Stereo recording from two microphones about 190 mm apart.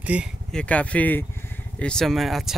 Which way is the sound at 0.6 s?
5° left (ahead or behind).